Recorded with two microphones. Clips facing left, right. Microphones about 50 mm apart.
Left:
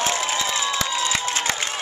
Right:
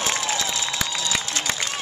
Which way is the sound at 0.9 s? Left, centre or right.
Left.